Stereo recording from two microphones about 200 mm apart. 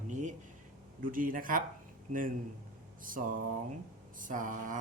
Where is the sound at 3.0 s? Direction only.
45° right (ahead or behind).